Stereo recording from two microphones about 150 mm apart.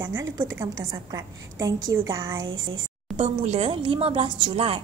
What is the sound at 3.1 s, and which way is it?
Speech, 40° right (ahead or behind).